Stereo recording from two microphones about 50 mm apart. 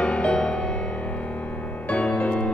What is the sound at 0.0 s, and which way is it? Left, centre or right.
Music, left.